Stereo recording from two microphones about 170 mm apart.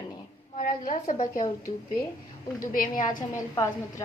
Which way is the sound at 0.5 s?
50° left (ahead or behind).